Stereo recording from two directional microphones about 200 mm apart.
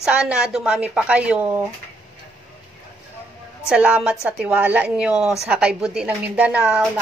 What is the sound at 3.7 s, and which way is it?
A woman's voice, 5° right (ahead or behind).